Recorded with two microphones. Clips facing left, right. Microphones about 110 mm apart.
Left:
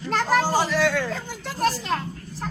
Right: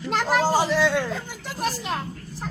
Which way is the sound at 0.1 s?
20° right (ahead or behind).